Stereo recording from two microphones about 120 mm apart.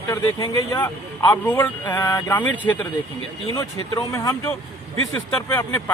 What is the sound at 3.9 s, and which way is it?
Speech, 25° left (ahead or behind).